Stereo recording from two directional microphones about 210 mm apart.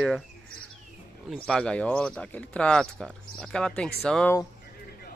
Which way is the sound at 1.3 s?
5° left (ahead or behind).